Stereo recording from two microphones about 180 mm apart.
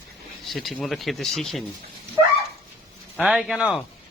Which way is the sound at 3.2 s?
Centre (ahead or behind).